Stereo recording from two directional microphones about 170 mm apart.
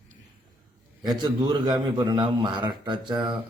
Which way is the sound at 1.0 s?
25° right (ahead or behind).